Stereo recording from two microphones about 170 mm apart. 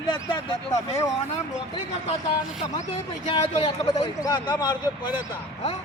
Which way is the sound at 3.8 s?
25° left (ahead or behind).